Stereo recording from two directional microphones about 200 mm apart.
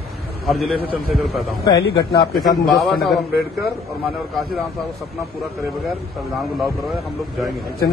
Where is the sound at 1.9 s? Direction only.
20° left (ahead or behind).